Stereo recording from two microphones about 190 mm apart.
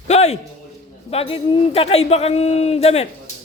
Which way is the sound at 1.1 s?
30° left (ahead or behind).